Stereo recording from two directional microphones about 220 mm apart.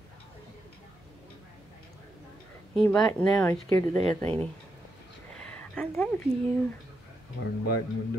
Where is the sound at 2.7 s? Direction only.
5° left (ahead or behind).